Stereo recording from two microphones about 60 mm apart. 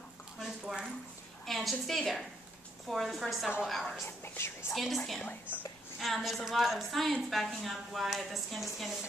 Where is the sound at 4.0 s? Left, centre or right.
Left.